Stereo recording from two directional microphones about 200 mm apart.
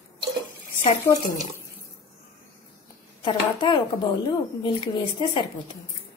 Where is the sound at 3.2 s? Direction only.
25° left (ahead or behind).